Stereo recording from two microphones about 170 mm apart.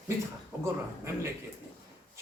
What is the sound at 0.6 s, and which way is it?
Speech, 15° right (ahead or behind).